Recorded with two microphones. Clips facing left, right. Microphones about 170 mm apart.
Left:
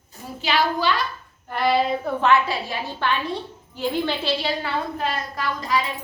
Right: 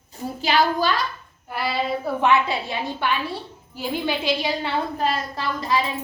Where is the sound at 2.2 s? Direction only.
20° right (ahead or behind).